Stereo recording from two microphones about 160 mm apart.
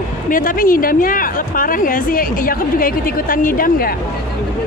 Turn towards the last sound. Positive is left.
turn(degrees=60)  # may be behind; listen again after turning